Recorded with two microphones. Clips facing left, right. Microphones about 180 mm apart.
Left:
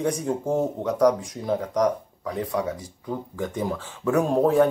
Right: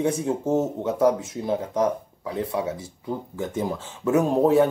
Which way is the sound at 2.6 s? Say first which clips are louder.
Even; 10° right (ahead or behind).